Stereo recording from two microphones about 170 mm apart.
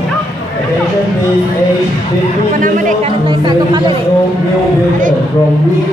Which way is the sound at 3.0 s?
25° right (ahead or behind).